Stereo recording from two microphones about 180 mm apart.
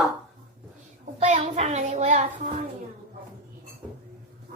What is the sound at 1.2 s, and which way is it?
Child singing, 40° right (ahead or behind).